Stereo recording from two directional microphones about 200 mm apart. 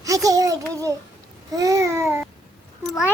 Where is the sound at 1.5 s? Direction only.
15° right (ahead or behind).